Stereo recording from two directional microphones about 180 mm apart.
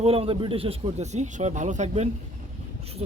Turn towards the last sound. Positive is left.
turn(degrees=-35)  # may be behind; listen again after turning